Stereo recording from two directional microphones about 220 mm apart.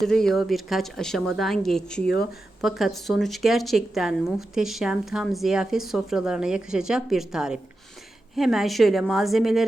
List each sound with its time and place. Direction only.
0.0 s speech: centre (ahead or behind)